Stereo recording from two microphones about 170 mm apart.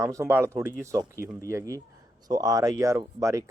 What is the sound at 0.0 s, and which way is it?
A man's voice, 15° right (ahead or behind).